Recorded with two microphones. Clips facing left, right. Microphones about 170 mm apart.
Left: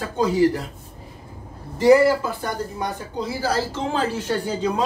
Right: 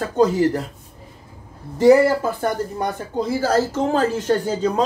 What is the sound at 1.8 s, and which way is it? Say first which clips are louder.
Speech: right 2 dB; 50° right (ahead or behind).